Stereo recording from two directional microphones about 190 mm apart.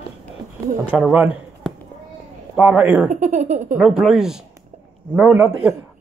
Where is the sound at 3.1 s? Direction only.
40° right (ahead or behind).